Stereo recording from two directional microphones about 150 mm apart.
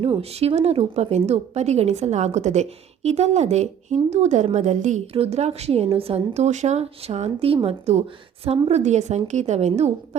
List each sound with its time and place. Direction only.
0.0 s a woman's voice: 40° right (ahead or behind)